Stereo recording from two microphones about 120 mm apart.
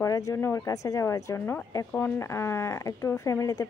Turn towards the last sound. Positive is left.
turn(degrees=30)  # may be behind; listen again after turning